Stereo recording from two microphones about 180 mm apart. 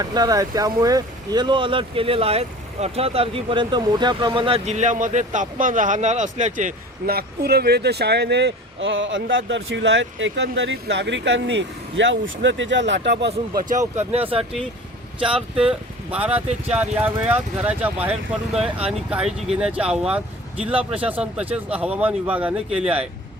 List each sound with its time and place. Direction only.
0.0 s speech: 20° right (ahead or behind); by 13.3 s 75° right (ahead or behind)
13.6 s speech: 45° right (ahead or behind)
14.1 s speech: 30° right (ahead or behind)
15.5 s speech: 30° right (ahead or behind)
16.1 s speech: 10° right (ahead or behind)